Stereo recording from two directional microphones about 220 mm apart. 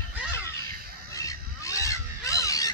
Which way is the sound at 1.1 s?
15° left (ahead or behind).